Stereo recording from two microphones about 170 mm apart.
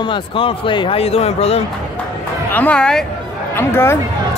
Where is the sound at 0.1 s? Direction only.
30° left (ahead or behind).